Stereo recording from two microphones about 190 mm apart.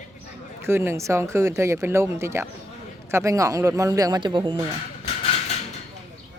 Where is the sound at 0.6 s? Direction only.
15° right (ahead or behind).